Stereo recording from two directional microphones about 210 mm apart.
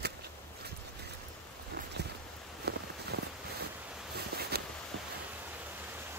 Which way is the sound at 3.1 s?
50° right (ahead or behind).